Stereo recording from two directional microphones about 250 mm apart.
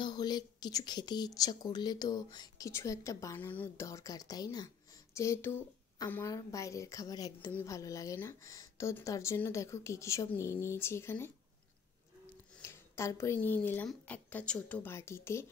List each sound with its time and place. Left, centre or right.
0.0 s a woman's voice: centre
12.6 s a woman's voice: centre